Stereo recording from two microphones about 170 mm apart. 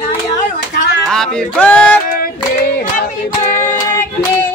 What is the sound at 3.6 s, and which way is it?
Child singing, 15° left (ahead or behind).